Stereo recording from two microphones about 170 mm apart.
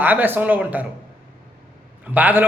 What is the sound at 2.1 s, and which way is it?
Speech, 10° right (ahead or behind).